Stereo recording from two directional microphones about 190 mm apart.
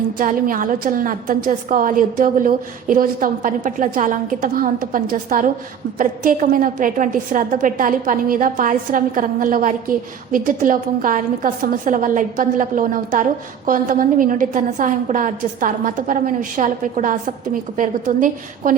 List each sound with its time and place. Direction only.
0.2 s a woman's voice: 45° right (ahead or behind)